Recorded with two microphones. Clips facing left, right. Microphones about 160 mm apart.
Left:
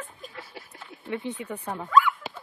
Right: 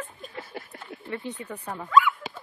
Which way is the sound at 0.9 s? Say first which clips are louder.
Right 8 dB; 60° right (ahead or behind).